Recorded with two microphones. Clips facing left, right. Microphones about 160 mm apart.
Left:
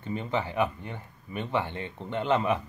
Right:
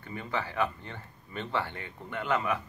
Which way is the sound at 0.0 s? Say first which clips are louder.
Left 5 dB; 20° left (ahead or behind).